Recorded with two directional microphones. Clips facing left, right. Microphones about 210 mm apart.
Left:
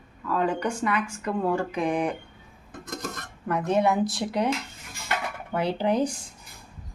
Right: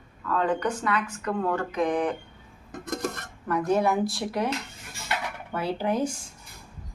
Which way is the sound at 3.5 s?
20° left (ahead or behind).